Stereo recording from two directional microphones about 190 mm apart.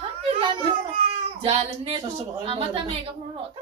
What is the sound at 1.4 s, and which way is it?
A woman's voice, 30° right (ahead or behind).